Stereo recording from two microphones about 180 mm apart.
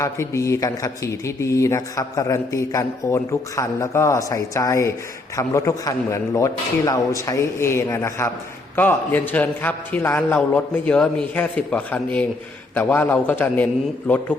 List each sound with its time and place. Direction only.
0.0 s a man's voice: 15° left (ahead or behind)